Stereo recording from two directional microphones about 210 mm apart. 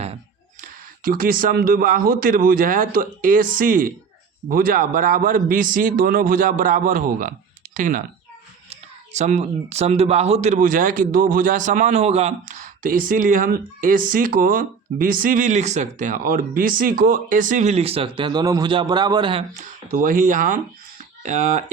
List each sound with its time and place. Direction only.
0.6 s speech: 45° right (ahead or behind)